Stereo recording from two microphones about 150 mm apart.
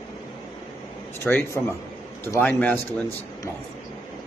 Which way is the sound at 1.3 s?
10° left (ahead or behind).